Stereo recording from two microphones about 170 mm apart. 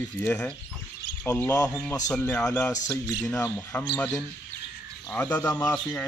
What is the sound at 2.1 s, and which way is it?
Speech, 5° left (ahead or behind).